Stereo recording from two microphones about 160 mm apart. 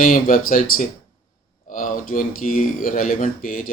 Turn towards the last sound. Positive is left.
turn(degrees=60)  # may be behind; listen again after turning